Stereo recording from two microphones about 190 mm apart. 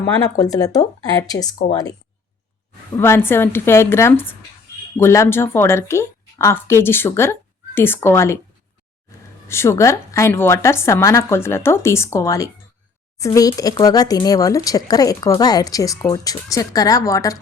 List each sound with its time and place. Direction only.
0.3 s speech: 20° left (ahead or behind)
3.0 s a woman's voice: 10° left (ahead or behind)
9.5 s a woman's voice: 15° left (ahead or behind)